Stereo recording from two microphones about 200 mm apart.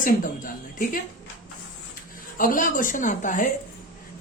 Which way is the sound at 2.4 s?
45° left (ahead or behind).